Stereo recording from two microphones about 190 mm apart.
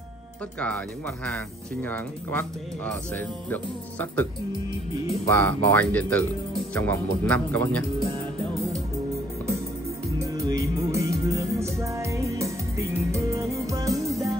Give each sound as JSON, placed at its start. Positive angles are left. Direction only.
{"t": 0.6, "sound": "speech", "side_deg": 5}
{"t": 10.1, "sound": "music", "side_deg": -15}
{"t": 14.0, "sound": "music", "side_deg": 0}